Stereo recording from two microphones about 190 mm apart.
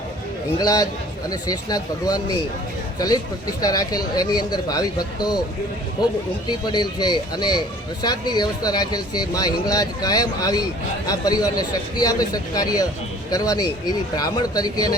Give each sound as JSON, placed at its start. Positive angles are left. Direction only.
{"t": 0.6, "sound": "speech", "side_deg": 20}
{"t": 3.6, "sound": "speech", "side_deg": 20}
{"t": 6.5, "sound": "speech", "side_deg": 20}